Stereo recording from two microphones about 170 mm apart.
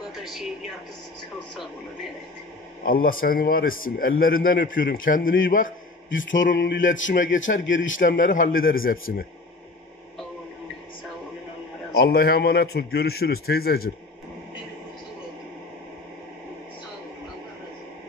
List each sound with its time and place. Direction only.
0.1 s a sound: centre (ahead or behind)
2.8 s a man's voice: 55° left (ahead or behind)
6.5 s a man's voice: 65° left (ahead or behind)
12.0 s a man's voice: 65° left (ahead or behind)